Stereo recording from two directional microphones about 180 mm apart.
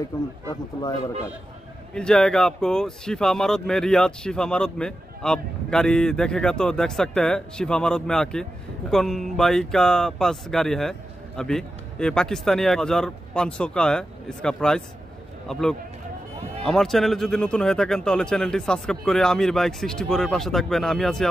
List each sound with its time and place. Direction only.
0.1 s speech: 15° left (ahead or behind)
2.0 s speech: 5° left (ahead or behind)